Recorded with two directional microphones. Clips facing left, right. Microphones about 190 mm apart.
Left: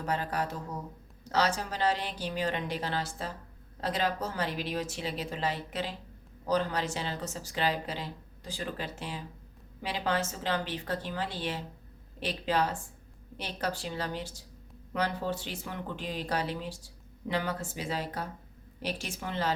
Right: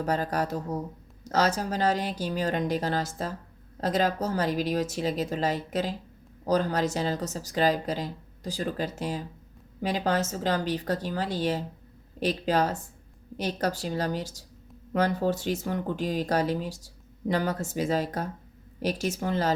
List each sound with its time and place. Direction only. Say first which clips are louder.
0.0 s speech: right 5 dB; 40° right (ahead or behind)